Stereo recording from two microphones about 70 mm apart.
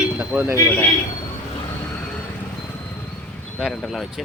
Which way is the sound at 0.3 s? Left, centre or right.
Right.